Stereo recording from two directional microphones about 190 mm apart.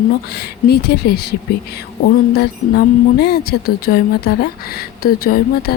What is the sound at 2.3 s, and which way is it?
Speech, 55° left (ahead or behind).